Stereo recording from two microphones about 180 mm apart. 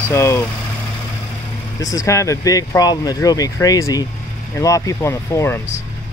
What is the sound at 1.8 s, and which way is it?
Speech, 20° left (ahead or behind).